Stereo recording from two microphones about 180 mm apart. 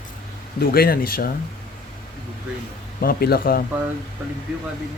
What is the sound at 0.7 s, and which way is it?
Speech, 55° left (ahead or behind).